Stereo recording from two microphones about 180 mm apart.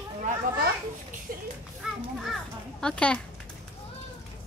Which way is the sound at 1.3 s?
50° right (ahead or behind).